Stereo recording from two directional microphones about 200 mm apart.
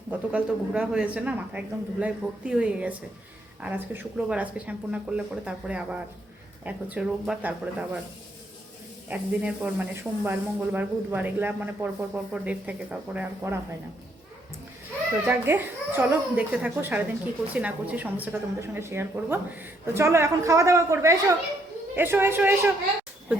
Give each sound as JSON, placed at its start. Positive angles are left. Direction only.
{"t": 0.1, "sound": "speech", "side_deg": -5}
{"t": 9.0, "sound": "speech", "side_deg": -5}
{"t": 15.4, "sound": "speech", "side_deg": -10}